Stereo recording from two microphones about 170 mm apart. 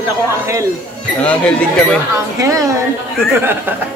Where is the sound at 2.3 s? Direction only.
20° right (ahead or behind).